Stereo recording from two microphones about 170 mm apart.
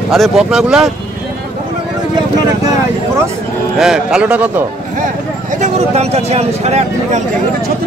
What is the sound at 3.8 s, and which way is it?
Speech, 5° right (ahead or behind).